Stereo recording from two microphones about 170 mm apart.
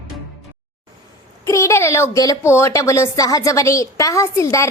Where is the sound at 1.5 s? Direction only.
15° left (ahead or behind).